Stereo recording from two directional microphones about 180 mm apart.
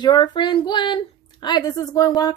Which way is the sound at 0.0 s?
25° left (ahead or behind).